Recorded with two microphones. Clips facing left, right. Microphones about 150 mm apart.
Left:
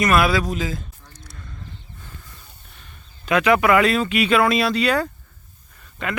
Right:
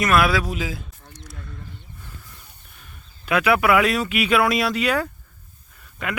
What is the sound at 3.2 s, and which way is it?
Speech, 5° right (ahead or behind).